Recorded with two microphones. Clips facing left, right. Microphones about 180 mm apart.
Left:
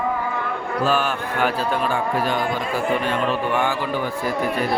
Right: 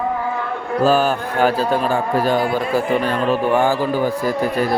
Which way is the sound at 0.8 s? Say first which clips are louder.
Right 6 dB; 40° right (ahead or behind).